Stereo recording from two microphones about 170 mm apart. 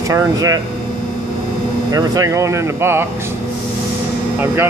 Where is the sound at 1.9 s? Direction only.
20° right (ahead or behind).